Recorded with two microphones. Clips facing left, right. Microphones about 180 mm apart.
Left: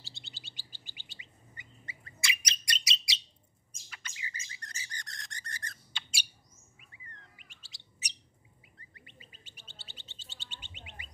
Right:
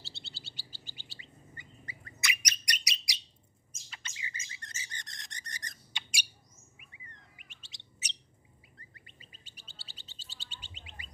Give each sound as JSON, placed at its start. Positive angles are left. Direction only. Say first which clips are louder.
{"t": 0.0, "sound": "chirp", "louder": "right 3 dB", "side_deg": 15}
{"t": 1.6, "sound": "bird", "louder": "left 2 dB", "side_deg": 25}
{"t": 3.9, "sound": "bird", "louder": "even", "side_deg": -25}
{"t": 7.3, "sound": "bird", "louder": "right 1 dB", "side_deg": -20}
{"t": 8.7, "sound": "bird", "louder": "left 3 dB", "side_deg": -40}